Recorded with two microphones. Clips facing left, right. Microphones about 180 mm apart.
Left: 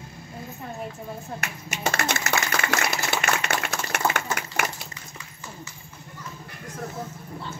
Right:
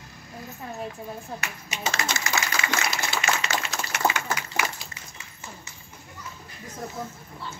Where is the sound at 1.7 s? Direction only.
55° left (ahead or behind).